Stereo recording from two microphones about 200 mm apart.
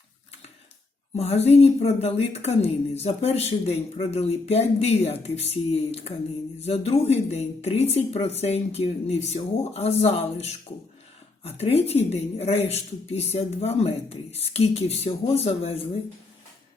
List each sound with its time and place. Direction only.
1.1 s speech: 30° left (ahead or behind)